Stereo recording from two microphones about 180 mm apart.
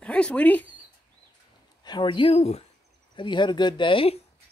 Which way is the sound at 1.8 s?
25° left (ahead or behind).